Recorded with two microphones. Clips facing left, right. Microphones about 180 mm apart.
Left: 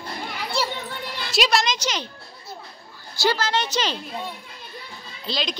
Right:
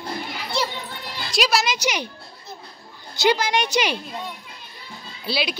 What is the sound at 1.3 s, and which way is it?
Music, centre (ahead or behind).